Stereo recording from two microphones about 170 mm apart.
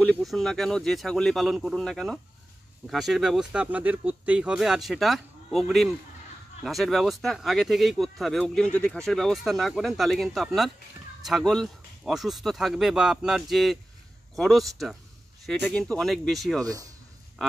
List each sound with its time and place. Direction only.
0.0 s speech: centre (ahead or behind)
16.6 s speech: 20° right (ahead or behind)